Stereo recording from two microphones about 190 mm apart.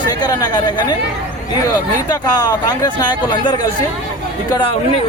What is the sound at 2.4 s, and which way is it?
Speech, 20° left (ahead or behind).